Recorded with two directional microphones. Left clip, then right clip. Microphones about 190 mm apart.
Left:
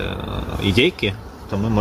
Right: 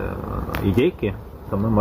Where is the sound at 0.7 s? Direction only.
15° left (ahead or behind).